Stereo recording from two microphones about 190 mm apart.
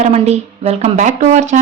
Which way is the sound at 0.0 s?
35° right (ahead or behind).